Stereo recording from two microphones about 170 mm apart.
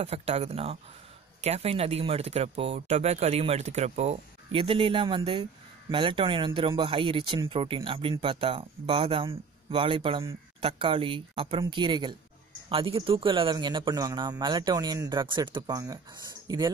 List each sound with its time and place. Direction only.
0.0 s a man's voice: 35° right (ahead or behind)